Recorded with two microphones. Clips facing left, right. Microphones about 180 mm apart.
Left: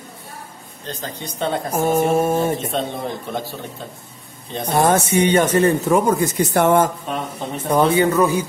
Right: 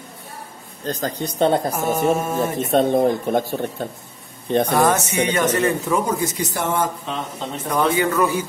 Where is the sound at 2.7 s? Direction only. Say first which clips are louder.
Right 8 dB; 50° right (ahead or behind).